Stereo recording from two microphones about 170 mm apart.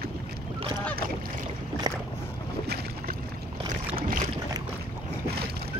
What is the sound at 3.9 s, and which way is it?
Boat, 55° right (ahead or behind).